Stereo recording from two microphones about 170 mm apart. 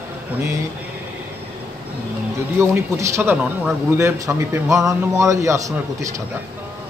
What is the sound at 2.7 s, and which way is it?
A man's voice, 15° right (ahead or behind).